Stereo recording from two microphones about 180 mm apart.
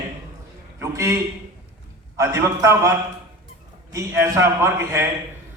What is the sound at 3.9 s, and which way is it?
A man's voice, 15° right (ahead or behind).